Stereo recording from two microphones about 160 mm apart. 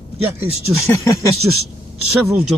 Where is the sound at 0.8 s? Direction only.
20° left (ahead or behind).